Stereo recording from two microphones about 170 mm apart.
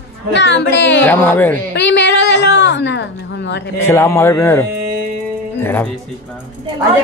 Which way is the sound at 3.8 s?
15° left (ahead or behind).